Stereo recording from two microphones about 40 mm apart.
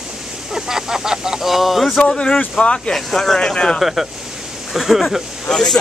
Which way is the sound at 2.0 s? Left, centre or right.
Left.